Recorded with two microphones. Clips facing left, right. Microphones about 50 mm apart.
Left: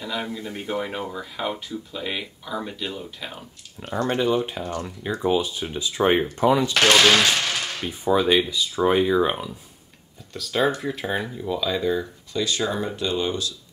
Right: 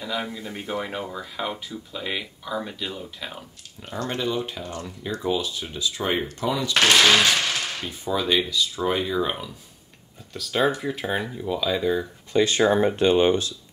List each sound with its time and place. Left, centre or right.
0.0 s speech: centre
4.1 s speech: centre
10.3 s speech: centre
12.3 s speech: right